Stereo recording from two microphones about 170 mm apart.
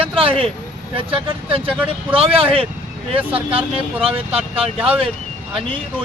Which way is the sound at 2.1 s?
35° right (ahead or behind).